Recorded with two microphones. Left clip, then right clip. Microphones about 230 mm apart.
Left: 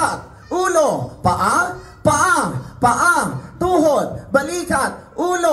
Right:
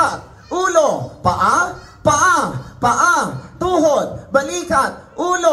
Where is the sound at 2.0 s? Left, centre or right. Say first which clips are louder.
Right 2 dB; left.